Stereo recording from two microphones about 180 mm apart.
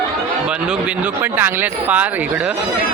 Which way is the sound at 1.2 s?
10° right (ahead or behind).